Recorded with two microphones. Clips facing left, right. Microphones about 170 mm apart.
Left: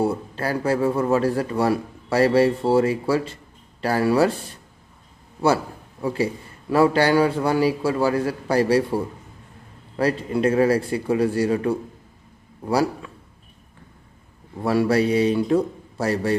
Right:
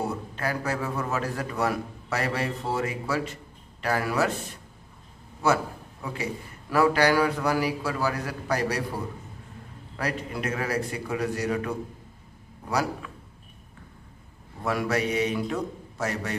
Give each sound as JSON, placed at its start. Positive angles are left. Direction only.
{"t": 0.0, "sound": "a man's voice", "side_deg": 30}
{"t": 6.0, "sound": "a man's voice", "side_deg": 30}
{"t": 14.6, "sound": "a man's voice", "side_deg": 30}